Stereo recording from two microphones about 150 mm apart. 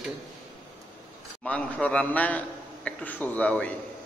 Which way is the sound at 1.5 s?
10° left (ahead or behind).